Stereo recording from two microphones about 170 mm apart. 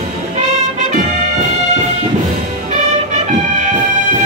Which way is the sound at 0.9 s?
45° right (ahead or behind).